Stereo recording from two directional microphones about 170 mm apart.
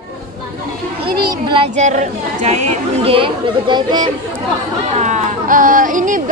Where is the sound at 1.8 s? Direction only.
45° right (ahead or behind); by 4.1 s 25° right (ahead or behind).